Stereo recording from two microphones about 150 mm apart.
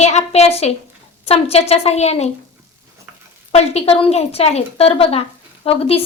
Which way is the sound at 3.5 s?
45° left (ahead or behind).